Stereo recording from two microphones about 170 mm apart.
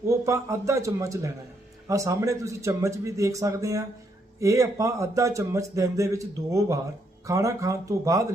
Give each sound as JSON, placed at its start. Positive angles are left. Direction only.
{"t": 0.1, "sound": "speech", "side_deg": -15}